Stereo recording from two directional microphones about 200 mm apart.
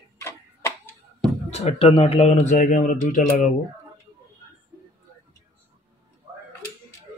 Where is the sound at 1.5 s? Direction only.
30° left (ahead or behind).